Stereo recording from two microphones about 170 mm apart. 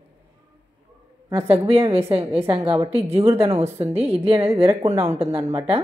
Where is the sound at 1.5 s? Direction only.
35° right (ahead or behind).